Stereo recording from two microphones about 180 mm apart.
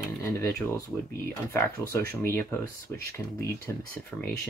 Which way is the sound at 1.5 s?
15° left (ahead or behind).